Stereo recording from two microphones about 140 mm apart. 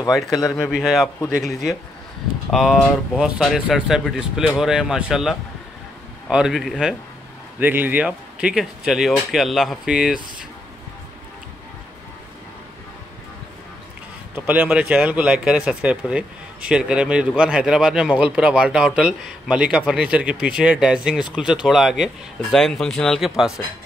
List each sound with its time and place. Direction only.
0.4 s speech: 25° left (ahead or behind)
0.7 s speech: 5° right (ahead or behind)
7.6 s speech: 15° right (ahead or behind)
14.3 s speech: 10° right (ahead or behind)